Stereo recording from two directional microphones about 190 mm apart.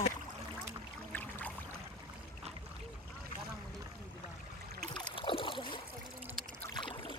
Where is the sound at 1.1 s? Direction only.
10° left (ahead or behind).